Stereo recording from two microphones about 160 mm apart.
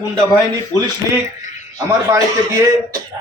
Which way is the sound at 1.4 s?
50° left (ahead or behind).